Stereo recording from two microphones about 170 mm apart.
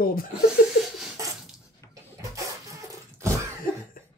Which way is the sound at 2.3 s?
20° right (ahead or behind).